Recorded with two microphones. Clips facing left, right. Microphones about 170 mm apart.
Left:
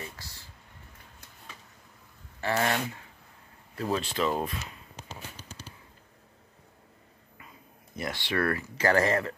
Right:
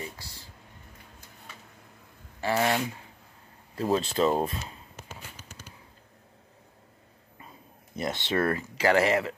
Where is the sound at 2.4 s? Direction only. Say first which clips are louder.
Right 2 dB; 20° right (ahead or behind).